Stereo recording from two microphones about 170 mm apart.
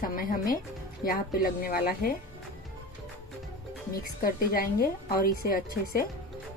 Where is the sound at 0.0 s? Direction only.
55° left (ahead or behind).